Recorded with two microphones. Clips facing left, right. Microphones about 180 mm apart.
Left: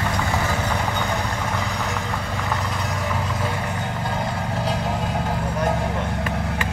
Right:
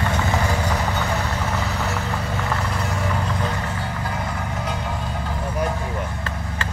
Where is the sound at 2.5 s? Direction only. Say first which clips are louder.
Even; centre (ahead or behind).